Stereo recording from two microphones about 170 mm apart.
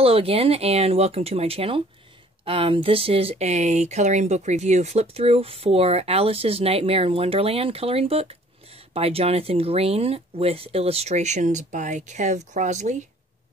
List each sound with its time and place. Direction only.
0.0 s speech: 35° right (ahead or behind)